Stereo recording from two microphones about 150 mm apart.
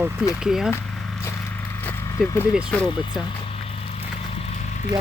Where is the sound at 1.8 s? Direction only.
15° left (ahead or behind).